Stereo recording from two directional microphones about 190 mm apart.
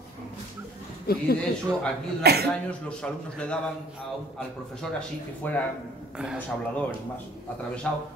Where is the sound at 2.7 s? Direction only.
5° left (ahead or behind).